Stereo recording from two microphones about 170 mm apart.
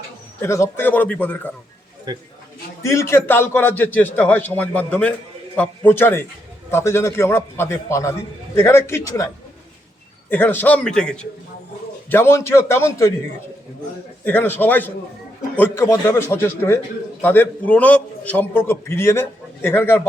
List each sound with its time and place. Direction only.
0.4 s a man's voice: 15° left (ahead or behind)
2.1 s a man's voice: 25° right (ahead or behind)
2.8 s a man's voice: 15° left (ahead or behind)
14.3 s a man's voice: 10° left (ahead or behind)